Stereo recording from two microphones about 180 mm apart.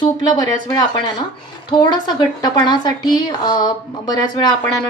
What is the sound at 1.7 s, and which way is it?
Speech, 25° left (ahead or behind).